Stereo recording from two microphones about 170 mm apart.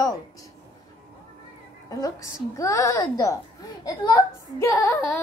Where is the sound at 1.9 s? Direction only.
20° left (ahead or behind).